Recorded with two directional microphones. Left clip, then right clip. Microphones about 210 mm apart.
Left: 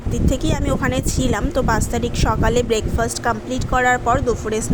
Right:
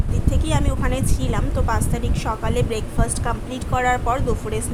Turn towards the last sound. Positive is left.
turn(degrees=15)  # may be behind; listen again after turning